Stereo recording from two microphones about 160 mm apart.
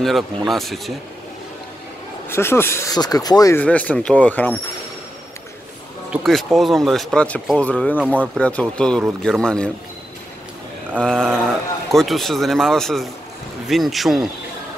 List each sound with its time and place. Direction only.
0.5 s speech: centre (ahead or behind)
2.2 s speech: 15° left (ahead or behind)
3.5 s speech: 10° left (ahead or behind)
6.2 s speech: centre (ahead or behind)
11.0 s speech: 5° left (ahead or behind)